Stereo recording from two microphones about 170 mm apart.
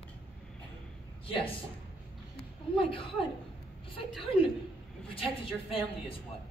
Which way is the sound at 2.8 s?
30° left (ahead or behind).